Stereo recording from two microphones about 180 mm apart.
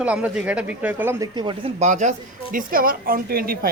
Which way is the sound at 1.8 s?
40° right (ahead or behind).